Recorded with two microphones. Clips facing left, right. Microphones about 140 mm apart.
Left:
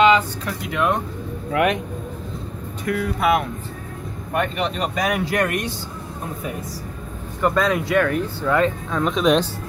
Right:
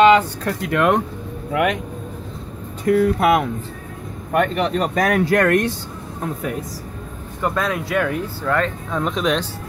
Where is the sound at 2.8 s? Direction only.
40° right (ahead or behind).